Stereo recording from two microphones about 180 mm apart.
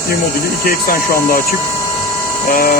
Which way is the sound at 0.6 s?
55° left (ahead or behind).